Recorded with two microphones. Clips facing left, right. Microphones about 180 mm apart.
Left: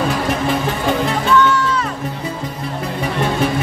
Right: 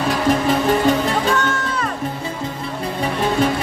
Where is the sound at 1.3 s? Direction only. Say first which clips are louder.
Left 6 dB; 45° right (ahead or behind).